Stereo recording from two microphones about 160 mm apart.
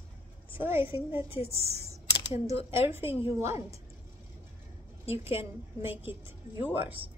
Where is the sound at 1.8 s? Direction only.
20° right (ahead or behind).